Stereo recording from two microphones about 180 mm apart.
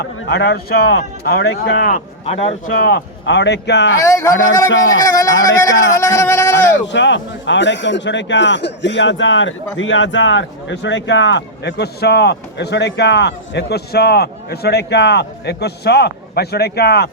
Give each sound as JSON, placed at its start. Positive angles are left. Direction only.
{"t": 0.2, "sound": "speech", "side_deg": 70}
{"t": 2.2, "sound": "speech", "side_deg": 35}
{"t": 2.6, "sound": "speech", "side_deg": 60}
{"t": 4.0, "sound": "speech", "side_deg": 15}
{"t": 6.8, "sound": "a man's voice", "side_deg": 90}